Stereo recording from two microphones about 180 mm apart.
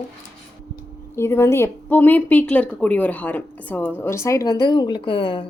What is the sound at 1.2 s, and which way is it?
Speech, 15° left (ahead or behind).